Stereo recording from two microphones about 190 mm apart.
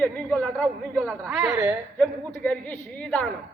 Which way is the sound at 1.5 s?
15° right (ahead or behind).